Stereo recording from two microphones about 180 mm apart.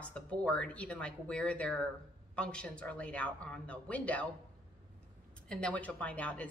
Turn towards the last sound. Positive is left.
turn(degrees=10)  # may be behind; listen again after turning